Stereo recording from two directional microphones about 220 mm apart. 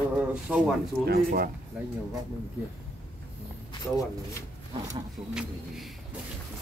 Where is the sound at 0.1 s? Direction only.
5° right (ahead or behind).